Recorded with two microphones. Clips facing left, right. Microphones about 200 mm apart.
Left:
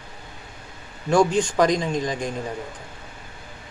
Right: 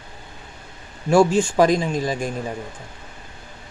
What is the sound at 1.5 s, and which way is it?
Speech, 10° right (ahead or behind).